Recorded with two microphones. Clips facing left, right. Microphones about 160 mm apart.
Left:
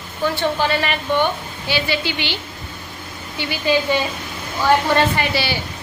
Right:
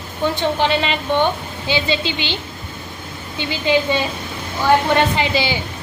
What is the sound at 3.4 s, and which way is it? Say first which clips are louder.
Speech: even; 20° right (ahead or behind).